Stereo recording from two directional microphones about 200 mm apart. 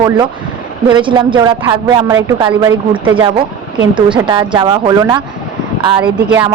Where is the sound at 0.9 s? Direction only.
25° right (ahead or behind).